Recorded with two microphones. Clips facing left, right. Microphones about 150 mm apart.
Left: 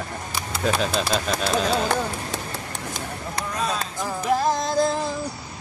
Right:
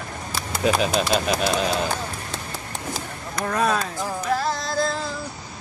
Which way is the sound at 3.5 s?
60° right (ahead or behind).